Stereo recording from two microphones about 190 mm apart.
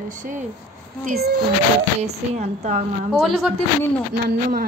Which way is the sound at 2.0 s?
35° right (ahead or behind).